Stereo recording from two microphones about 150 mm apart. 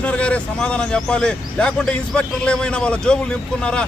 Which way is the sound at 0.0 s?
10° left (ahead or behind).